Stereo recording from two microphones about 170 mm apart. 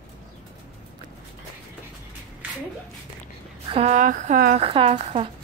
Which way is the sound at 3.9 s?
50° right (ahead or behind).